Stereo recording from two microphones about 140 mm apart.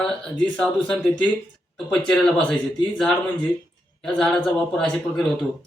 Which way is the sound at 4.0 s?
5° left (ahead or behind).